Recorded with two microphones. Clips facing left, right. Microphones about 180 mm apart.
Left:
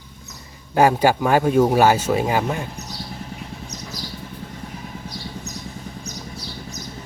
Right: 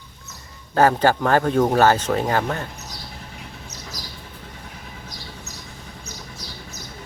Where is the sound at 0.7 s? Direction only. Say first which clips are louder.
Left 1 dB; 10° left (ahead or behind).